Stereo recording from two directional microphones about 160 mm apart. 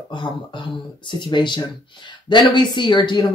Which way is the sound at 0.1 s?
30° left (ahead or behind).